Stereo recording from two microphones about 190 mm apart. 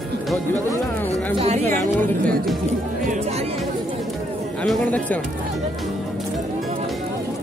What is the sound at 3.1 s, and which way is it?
Speech, 35° right (ahead or behind).